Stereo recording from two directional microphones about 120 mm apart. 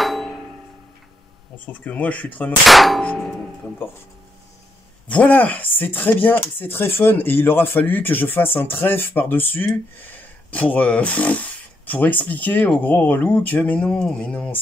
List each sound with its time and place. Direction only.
0.0 s music: centre (ahead or behind)
1.7 s speech: 10° left (ahead or behind)
2.6 s clang: centre (ahead or behind)
5.0 s speech: 10° left (ahead or behind)